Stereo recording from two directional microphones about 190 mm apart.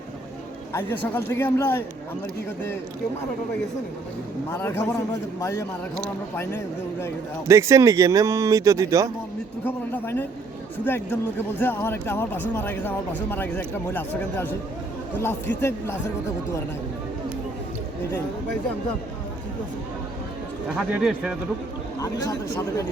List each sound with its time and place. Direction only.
0.7 s speech: 10° left (ahead or behind)
4.6 s speech: 10° left (ahead or behind)
7.4 s speech: 15° right (ahead or behind)
9.6 s speech: 10° left (ahead or behind)
20.7 s speech: 5° right (ahead or behind)